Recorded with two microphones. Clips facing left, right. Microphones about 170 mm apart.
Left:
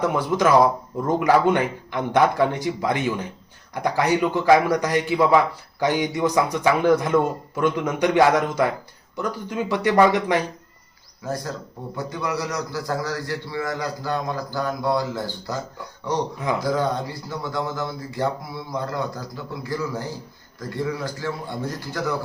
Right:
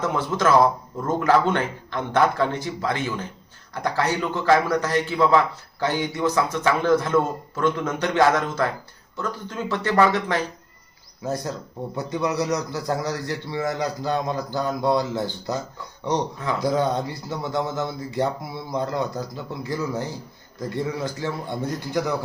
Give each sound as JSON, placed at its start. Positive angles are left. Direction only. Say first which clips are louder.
{"t": 0.0, "sound": "speech", "louder": "left 2 dB", "side_deg": 15}
{"t": 11.2, "sound": "a man's voice", "louder": "right 1 dB", "side_deg": -20}
{"t": 16.6, "sound": "a man's voice", "louder": "right 4 dB", "side_deg": -20}